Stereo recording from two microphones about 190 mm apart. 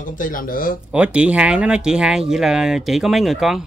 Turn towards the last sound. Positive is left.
turn(degrees=0)  # may be behind; listen again after turning